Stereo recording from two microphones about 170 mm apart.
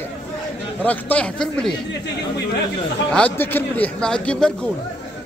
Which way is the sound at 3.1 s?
10° left (ahead or behind).